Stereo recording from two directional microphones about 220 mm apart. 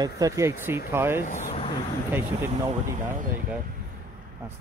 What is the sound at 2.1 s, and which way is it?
Speech, 10° right (ahead or behind).